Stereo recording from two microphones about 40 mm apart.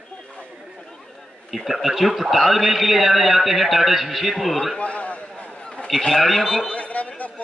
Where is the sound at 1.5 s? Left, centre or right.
Centre.